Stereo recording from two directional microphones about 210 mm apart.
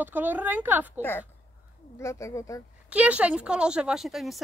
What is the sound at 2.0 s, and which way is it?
Speech, 15° left (ahead or behind).